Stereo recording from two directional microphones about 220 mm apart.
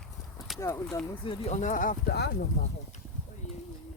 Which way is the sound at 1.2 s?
25° left (ahead or behind).